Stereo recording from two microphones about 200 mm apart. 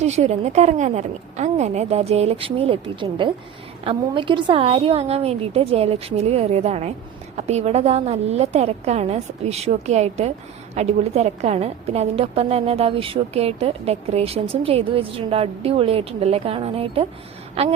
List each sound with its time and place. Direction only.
0.0 s a woman's voice: 35° right (ahead or behind)